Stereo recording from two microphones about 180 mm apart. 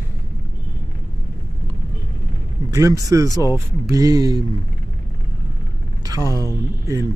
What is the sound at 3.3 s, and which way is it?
Speech, 20° left (ahead or behind).